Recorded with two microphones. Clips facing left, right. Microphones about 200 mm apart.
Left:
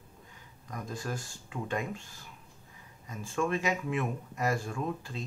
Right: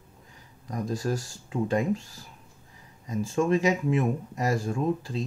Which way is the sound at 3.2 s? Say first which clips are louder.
Right 7 dB; 25° right (ahead or behind).